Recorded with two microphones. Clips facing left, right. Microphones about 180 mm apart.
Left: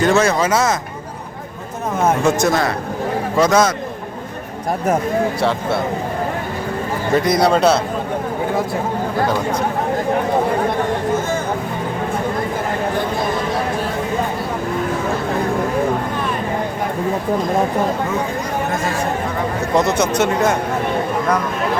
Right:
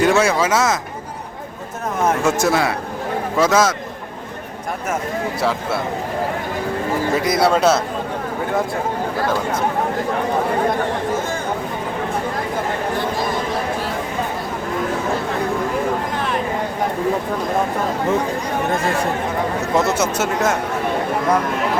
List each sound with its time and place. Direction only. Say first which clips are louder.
0.0 s speech: left 1 dB; 10° right (ahead or behind)
2.2 s speech: left 1 dB; 5° right (ahead or behind)
7.2 s speech: left 3 dB; 5° right (ahead or behind)
19.7 s speech: left 3 dB; 5° right (ahead or behind)